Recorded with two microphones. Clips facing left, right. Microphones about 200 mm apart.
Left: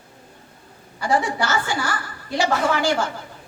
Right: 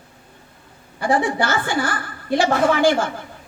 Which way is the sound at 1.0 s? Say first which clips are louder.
Right 2 dB; 55° right (ahead or behind).